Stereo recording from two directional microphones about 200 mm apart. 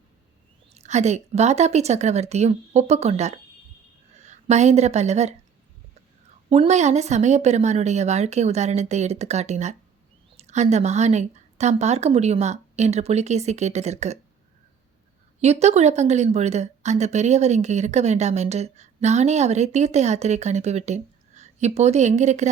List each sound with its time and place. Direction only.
0.7 s a woman's voice: 35° right (ahead or behind)
6.5 s a woman's voice: 35° right (ahead or behind)
15.4 s a woman's voice: 35° right (ahead or behind)